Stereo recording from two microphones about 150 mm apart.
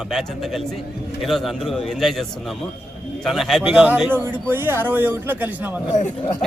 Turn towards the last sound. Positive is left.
turn(degrees=55)  # may be behind; listen again after turning